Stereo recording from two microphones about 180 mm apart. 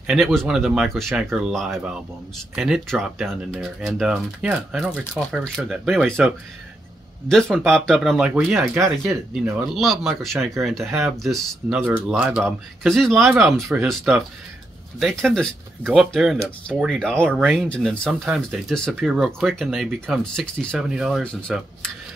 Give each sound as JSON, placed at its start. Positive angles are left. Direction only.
{"t": 0.0, "sound": "speech", "side_deg": 0}